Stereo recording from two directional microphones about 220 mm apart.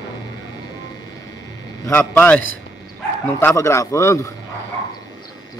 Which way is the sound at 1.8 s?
10° left (ahead or behind).